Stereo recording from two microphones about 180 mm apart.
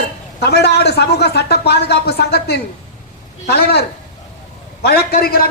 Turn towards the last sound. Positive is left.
turn(degrees=55)  # may be behind; listen again after turning